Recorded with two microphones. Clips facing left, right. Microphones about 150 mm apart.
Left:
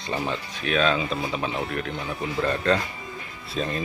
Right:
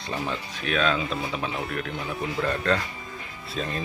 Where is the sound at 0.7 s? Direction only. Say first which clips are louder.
Left 2 dB; centre (ahead or behind).